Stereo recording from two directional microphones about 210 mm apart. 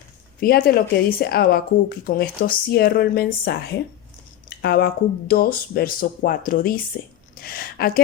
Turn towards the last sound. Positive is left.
turn(degrees=45)  # may be behind; listen again after turning